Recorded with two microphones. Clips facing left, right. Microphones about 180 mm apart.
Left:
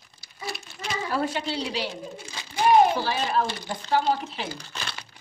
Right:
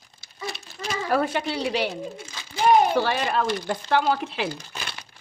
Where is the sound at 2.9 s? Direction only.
65° right (ahead or behind).